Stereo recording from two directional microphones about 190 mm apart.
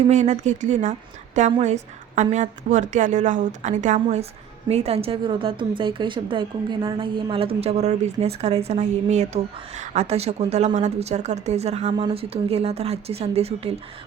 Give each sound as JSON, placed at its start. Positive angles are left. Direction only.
{"t": 0.1, "sound": "a woman's voice", "side_deg": -40}